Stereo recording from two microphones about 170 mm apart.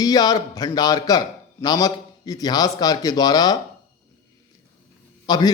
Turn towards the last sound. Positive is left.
turn(degrees=25)  # may be behind; listen again after turning